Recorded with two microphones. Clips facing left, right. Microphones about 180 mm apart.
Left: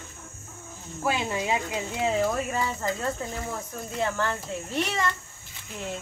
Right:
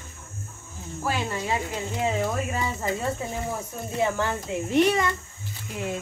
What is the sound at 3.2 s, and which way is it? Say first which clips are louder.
Speech: right 3 dB; 5° right (ahead or behind).